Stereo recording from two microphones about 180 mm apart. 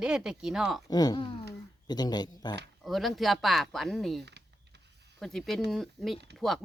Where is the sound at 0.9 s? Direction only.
20° left (ahead or behind).